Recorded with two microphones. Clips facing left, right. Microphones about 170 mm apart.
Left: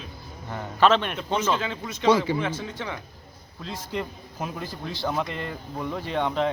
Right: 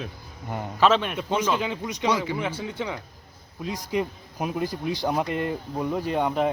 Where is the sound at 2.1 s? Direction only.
30° left (ahead or behind).